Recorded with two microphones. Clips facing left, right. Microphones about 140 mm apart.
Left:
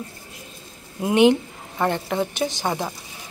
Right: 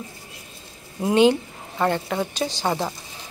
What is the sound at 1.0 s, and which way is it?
A woman's voice, 15° left (ahead or behind).